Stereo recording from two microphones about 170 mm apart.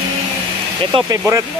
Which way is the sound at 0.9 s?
20° right (ahead or behind).